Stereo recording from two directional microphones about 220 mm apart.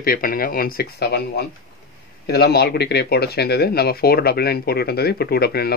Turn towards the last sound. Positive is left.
turn(degrees=45)  # may be behind; listen again after turning